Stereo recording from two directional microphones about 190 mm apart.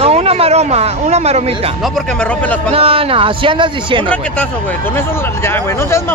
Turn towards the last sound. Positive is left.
turn(degrees=15)  # may be behind; listen again after turning